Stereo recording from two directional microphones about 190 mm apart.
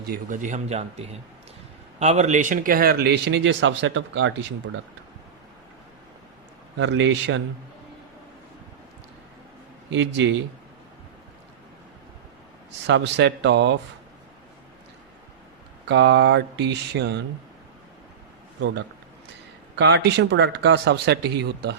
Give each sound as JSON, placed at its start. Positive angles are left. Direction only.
{"t": 0.0, "sound": "speech", "side_deg": -45}
{"t": 6.7, "sound": "speech", "side_deg": -75}
{"t": 9.9, "sound": "speech", "side_deg": -75}
{"t": 12.9, "sound": "speech", "side_deg": -70}
{"t": 15.9, "sound": "speech", "side_deg": -65}
{"t": 19.7, "sound": "speech", "side_deg": -65}